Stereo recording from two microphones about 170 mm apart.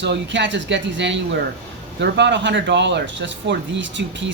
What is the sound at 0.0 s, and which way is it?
Speech, 90° right.